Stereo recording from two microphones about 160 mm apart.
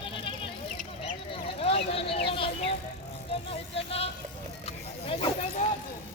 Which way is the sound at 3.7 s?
40° left (ahead or behind).